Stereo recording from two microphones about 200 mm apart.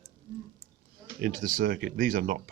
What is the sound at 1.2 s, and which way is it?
Speech, 45° right (ahead or behind).